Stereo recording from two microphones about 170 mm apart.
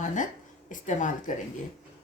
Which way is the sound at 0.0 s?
50° left (ahead or behind).